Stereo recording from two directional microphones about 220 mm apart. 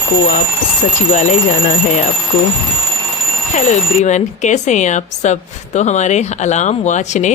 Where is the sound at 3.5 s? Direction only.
35° left (ahead or behind).